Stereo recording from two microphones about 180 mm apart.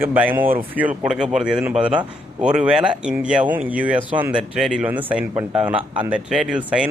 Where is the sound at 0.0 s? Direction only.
10° right (ahead or behind).